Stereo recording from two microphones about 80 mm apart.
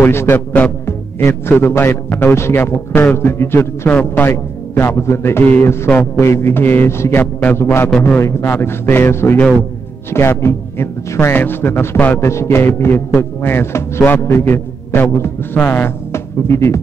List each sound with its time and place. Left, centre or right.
0.0 s a man's voice: left